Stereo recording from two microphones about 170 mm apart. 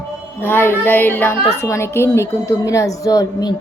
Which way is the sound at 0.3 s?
15° left (ahead or behind).